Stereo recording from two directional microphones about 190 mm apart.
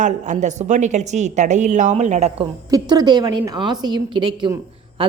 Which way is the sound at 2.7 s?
20° right (ahead or behind).